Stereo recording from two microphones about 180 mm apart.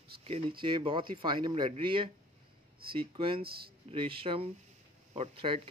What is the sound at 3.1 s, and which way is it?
Speech, 30° right (ahead or behind).